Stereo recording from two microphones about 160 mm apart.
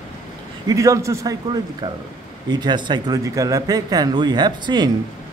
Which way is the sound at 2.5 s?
25° right (ahead or behind).